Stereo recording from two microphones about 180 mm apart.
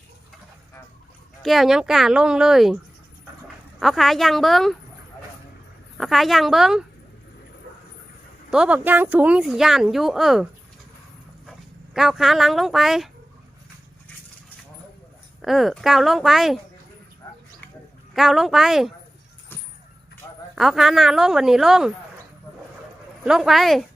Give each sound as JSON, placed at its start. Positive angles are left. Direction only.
{"t": 1.4, "sound": "speech", "side_deg": 0}
{"t": 3.8, "sound": "speech", "side_deg": 0}
{"t": 6.0, "sound": "speech", "side_deg": 0}
{"t": 8.4, "sound": "speech", "side_deg": -5}
{"t": 11.9, "sound": "speech", "side_deg": 0}
{"t": 15.4, "sound": "speech", "side_deg": 0}
{"t": 18.1, "sound": "speech", "side_deg": 0}
{"t": 20.2, "sound": "a sound", "side_deg": 20}
{"t": 20.6, "sound": "speech", "side_deg": 0}
{"t": 23.2, "sound": "speech", "side_deg": 0}